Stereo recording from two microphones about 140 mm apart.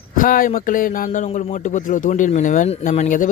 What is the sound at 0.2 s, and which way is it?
A man's voice, 75° left (ahead or behind).